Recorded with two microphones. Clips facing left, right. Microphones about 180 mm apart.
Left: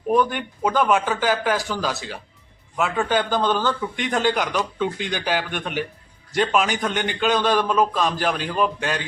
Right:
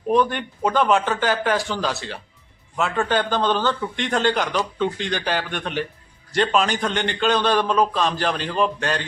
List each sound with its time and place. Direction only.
0.1 s a man's voice: 10° left (ahead or behind)